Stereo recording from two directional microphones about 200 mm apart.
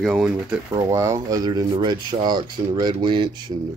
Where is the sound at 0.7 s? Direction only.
15° right (ahead or behind).